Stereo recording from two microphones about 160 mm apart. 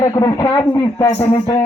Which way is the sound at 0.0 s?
20° left (ahead or behind).